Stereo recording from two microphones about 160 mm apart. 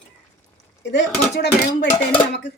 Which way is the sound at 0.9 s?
90° left.